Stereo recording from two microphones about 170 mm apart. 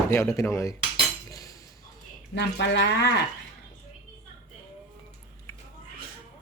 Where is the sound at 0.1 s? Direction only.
20° left (ahead or behind).